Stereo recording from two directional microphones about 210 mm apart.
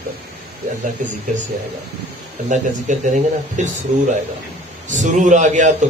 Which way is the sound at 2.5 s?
35° right (ahead or behind).